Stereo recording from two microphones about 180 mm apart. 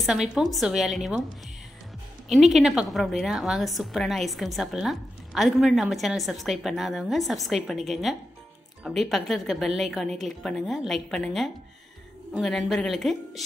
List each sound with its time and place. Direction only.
0.0 s a woman's voice: centre (ahead or behind)
2.3 s a woman's voice: centre (ahead or behind)